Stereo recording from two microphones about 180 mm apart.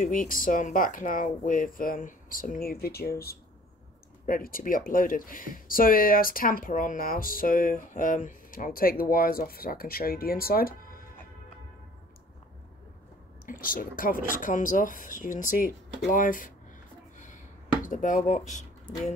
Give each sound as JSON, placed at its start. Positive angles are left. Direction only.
{"t": 0.0, "sound": "speech", "side_deg": 45}
{"t": 13.5, "sound": "speech", "side_deg": 50}
{"t": 17.8, "sound": "speech", "side_deg": 45}